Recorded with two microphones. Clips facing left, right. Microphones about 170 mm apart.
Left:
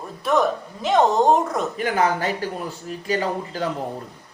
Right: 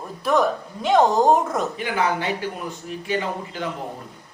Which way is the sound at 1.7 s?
45° left (ahead or behind).